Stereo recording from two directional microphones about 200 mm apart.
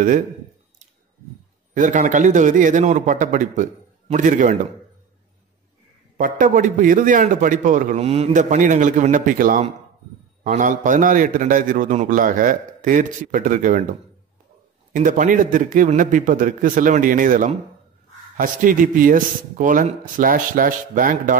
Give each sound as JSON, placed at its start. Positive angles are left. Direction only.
{"t": 1.7, "sound": "a man's voice", "side_deg": -40}
{"t": 6.1, "sound": "a man's voice", "side_deg": -40}
{"t": 14.9, "sound": "a man's voice", "side_deg": -40}